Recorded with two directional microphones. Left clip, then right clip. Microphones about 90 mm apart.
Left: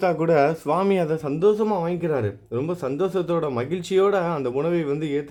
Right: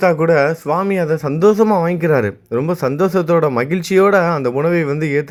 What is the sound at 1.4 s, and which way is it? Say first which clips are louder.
Speech: right 7 dB; 90° right.